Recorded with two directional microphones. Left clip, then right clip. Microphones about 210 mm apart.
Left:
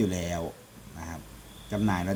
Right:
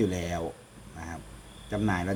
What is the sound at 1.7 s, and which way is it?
Speech, 50° left (ahead or behind).